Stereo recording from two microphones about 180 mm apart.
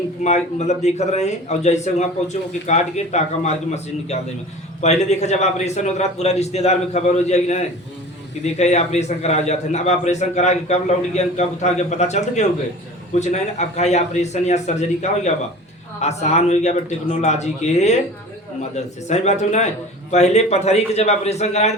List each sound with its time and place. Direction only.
0.2 s a man's voice: 40° left (ahead or behind)
4.8 s a man's voice: 40° left (ahead or behind)
19.0 s a man's voice: 40° left (ahead or behind)